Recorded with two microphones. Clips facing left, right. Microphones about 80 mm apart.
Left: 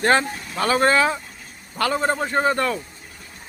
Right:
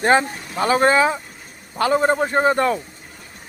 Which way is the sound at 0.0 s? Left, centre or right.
Centre.